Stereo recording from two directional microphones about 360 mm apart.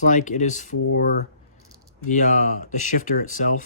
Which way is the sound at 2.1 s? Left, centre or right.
Left.